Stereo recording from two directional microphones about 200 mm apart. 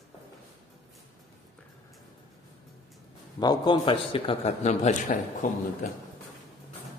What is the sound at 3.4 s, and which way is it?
A man's voice, 20° left (ahead or behind).